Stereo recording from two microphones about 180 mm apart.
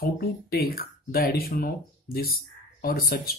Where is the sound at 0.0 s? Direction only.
60° left (ahead or behind).